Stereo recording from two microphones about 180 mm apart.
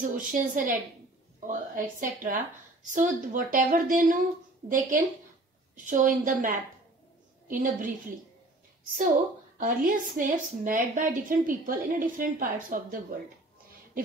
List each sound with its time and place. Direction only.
0.0 s a woman's voice: 50° right (ahead or behind)
9.6 s a woman's voice: 50° right (ahead or behind)